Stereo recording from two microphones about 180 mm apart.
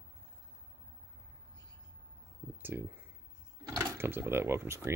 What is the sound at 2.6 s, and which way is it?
Speech, 10° right (ahead or behind).